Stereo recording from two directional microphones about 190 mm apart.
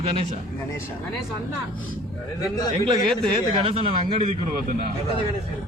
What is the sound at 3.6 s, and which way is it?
Speech, 25° right (ahead or behind).